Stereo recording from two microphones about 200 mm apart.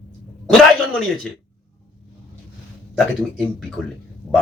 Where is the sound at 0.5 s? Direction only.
Centre (ahead or behind).